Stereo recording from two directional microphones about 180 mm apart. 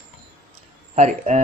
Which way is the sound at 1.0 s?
40° right (ahead or behind).